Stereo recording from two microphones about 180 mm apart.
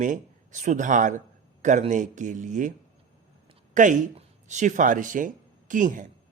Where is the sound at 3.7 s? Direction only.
45° right (ahead or behind).